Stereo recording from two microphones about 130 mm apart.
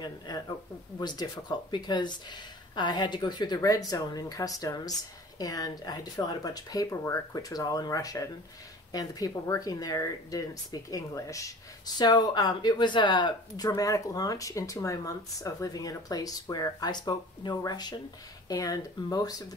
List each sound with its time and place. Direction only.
0.0 s speech: 30° left (ahead or behind)